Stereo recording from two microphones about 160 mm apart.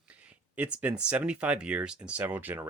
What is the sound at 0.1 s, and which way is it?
Speech, 10° right (ahead or behind).